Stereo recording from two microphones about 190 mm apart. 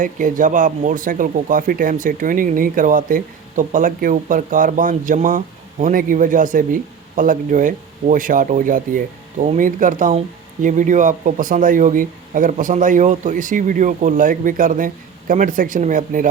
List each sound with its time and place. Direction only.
0.0 s speech: 45° right (ahead or behind)